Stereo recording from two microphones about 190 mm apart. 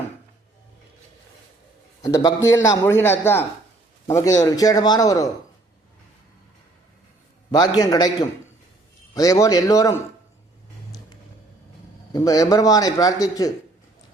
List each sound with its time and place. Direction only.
2.0 s a man's voice: 20° left (ahead or behind)
7.5 s a man's voice: 20° left (ahead or behind)
12.1 s a man's voice: 20° left (ahead or behind)